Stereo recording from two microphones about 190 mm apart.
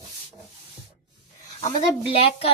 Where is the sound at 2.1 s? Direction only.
30° left (ahead or behind).